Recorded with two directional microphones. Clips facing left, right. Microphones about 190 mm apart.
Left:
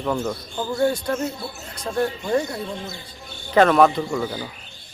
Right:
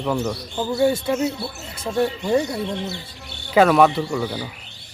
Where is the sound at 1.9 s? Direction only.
20° right (ahead or behind).